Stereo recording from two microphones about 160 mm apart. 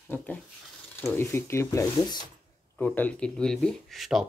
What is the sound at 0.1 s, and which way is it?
Speech, 10° left (ahead or behind).